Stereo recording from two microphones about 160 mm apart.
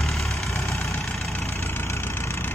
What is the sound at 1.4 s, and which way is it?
Vehicle, 15° left (ahead or behind).